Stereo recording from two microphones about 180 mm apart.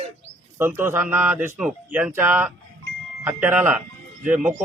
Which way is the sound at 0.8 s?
10° right (ahead or behind).